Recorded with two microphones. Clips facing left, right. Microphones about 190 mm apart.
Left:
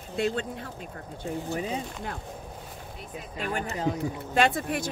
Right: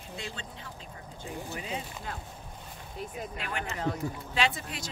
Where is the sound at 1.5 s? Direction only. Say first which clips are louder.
Left 7 dB; 40° left (ahead or behind).